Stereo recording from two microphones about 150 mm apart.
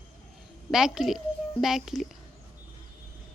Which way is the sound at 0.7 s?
5° right (ahead or behind).